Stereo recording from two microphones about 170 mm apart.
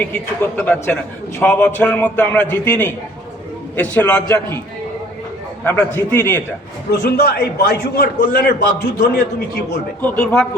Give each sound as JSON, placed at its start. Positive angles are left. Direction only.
{"t": 0.0, "sound": "a man's voice", "side_deg": 10}
{"t": 5.6, "sound": "a man's voice", "side_deg": 10}
{"t": 7.2, "sound": "a man's voice", "side_deg": 65}
{"t": 10.0, "sound": "a man's voice", "side_deg": 10}